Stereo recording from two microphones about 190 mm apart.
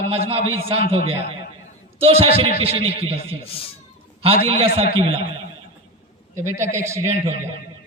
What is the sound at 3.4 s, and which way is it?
Speech, 30° left (ahead or behind).